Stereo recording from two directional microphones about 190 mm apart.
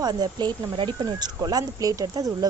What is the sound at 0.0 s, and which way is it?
Speech, 20° right (ahead or behind).